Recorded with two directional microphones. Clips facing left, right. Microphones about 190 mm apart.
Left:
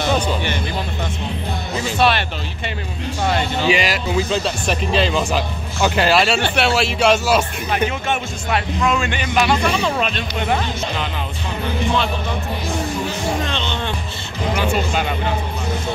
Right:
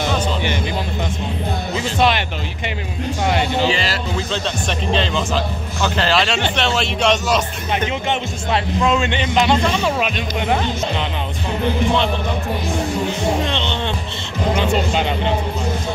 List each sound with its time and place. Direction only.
2.0 s speech: 15° right (ahead or behind)
3.3 s speech: 15° right (ahead or behind)
3.6 s speech: 15° left (ahead or behind)
8.1 s a man's voice: 25° right (ahead or behind)
9.6 s speech: 10° left (ahead or behind)
9.8 s speech: 10° right (ahead or behind)
13.5 s a man's voice: 20° right (ahead or behind)